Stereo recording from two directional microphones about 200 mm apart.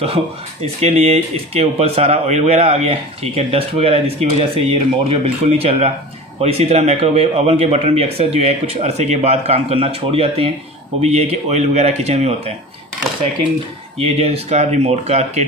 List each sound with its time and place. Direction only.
0.0 s speech: 30° right (ahead or behind)
13.9 s speech: 30° right (ahead or behind)